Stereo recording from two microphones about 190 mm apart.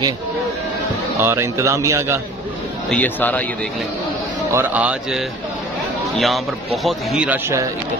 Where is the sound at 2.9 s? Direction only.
10° left (ahead or behind).